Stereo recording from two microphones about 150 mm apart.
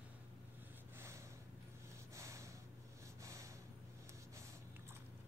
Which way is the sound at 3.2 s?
20° right (ahead or behind).